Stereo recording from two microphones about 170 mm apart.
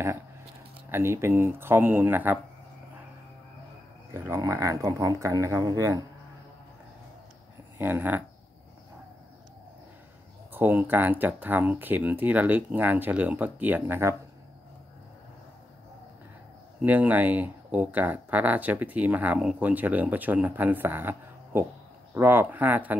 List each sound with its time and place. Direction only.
0.8 s speech: 15° right (ahead or behind)
4.1 s speech: 15° right (ahead or behind)
7.7 s speech: 10° right (ahead or behind)
10.5 s speech: 10° right (ahead or behind)
16.8 s speech: 10° right (ahead or behind)